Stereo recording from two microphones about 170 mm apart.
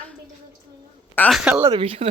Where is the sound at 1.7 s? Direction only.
35° right (ahead or behind).